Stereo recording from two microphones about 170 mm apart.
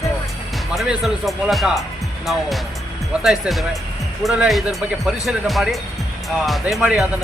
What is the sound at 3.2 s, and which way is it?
Speech, centre (ahead or behind).